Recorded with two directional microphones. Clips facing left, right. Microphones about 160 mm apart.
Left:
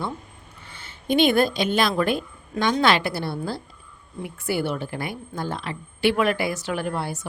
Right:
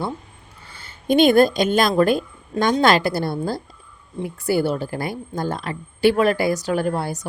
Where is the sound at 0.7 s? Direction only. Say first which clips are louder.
Right 4 dB; 40° right (ahead or behind).